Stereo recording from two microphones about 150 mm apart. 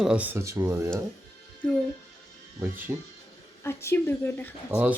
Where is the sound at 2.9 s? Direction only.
15° right (ahead or behind).